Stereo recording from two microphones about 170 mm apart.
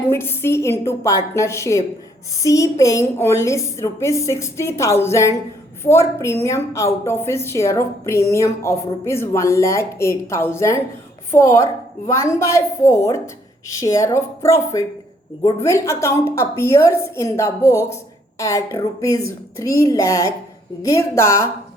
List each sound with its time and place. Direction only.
0.1 s a woman's voice: 15° left (ahead or behind)